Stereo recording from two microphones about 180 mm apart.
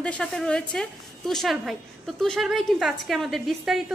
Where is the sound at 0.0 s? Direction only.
5° left (ahead or behind).